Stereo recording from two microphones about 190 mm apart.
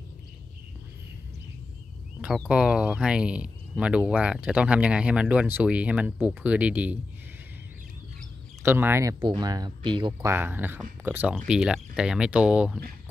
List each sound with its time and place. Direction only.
2.2 s speech: 5° right (ahead or behind)
8.6 s speech: 10° right (ahead or behind)
10.2 s speech: 10° right (ahead or behind)